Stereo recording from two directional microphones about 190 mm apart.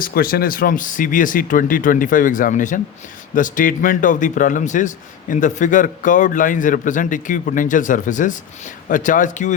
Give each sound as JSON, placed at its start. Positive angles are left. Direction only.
{"t": 0.0, "sound": "a man's voice", "side_deg": 50}